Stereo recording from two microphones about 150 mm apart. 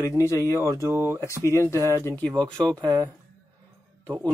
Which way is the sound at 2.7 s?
25° right (ahead or behind).